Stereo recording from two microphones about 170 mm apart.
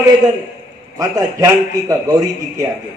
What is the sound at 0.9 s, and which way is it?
A man's voice, 20° right (ahead or behind).